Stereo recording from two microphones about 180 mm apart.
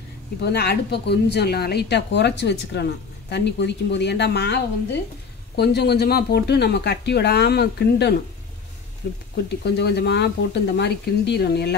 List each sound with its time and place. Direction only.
0.4 s speech: 65° left (ahead or behind)
5.6 s speech: 65° left (ahead or behind)